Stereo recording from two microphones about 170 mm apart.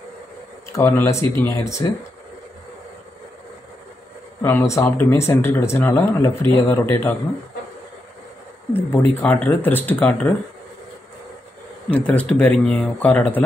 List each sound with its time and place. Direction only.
0.7 s speech: 15° left (ahead or behind)
4.4 s speech: 15° left (ahead or behind)
8.7 s speech: 10° left (ahead or behind)
12.1 s speech: 10° left (ahead or behind)